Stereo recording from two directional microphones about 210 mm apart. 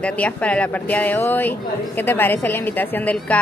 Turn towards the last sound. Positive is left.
turn(degrees=5)  # may be behind; listen again after turning